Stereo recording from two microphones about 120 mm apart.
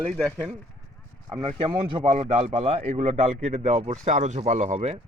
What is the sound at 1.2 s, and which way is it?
Speech, 40° right (ahead or behind).